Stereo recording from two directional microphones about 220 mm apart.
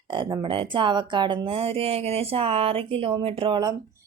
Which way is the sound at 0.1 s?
20° right (ahead or behind).